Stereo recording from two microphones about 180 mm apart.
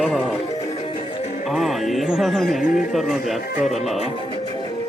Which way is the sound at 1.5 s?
Centre (ahead or behind).